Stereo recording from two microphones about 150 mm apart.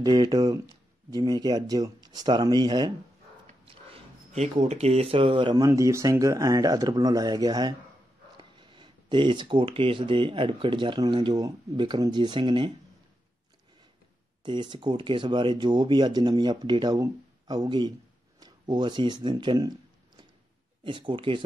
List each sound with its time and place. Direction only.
0.0 s speech: 25° right (ahead or behind)
3.6 s speech: 45° right (ahead or behind)
5.6 s speech: 20° right (ahead or behind)
14.4 s speech: 30° right (ahead or behind)
20.8 s speech: 35° right (ahead or behind)